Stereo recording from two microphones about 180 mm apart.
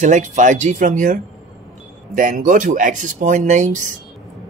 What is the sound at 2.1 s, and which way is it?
Speech, 45° right (ahead or behind).